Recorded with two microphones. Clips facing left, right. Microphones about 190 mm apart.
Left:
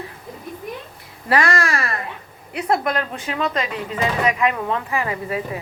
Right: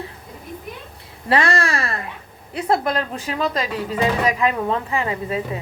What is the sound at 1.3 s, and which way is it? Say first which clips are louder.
A woman's voice: even; 30° right (ahead or behind).